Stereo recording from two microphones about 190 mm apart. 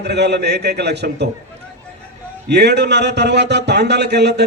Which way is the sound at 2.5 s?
60° right (ahead or behind).